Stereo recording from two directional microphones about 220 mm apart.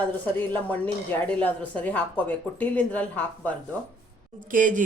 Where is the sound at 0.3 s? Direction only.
10° left (ahead or behind).